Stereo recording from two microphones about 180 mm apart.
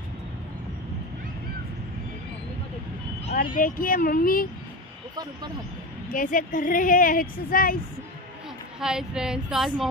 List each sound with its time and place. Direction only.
3.5 s speech: 50° left (ahead or behind)
6.1 s speech: 50° left (ahead or behind)
8.7 s speech: 5° right (ahead or behind)